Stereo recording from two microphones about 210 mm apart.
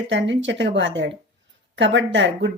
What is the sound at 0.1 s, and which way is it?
A woman's voice, 60° right (ahead or behind).